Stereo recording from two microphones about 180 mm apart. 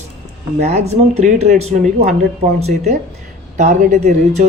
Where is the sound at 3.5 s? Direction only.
40° right (ahead or behind).